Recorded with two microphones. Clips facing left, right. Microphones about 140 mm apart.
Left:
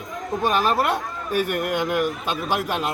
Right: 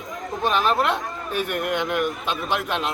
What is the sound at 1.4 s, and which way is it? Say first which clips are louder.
Speech: left 3 dB; 45° left (ahead or behind).